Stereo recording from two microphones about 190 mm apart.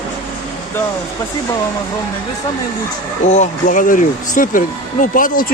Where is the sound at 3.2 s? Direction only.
40° left (ahead or behind).